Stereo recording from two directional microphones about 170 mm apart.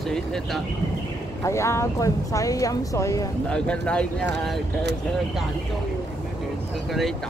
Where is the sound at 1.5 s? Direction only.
15° left (ahead or behind).